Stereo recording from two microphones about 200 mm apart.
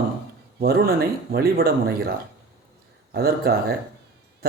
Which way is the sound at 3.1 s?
50° right (ahead or behind).